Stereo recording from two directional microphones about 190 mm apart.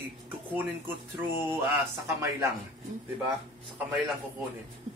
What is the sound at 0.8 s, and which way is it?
Speech, 10° right (ahead or behind).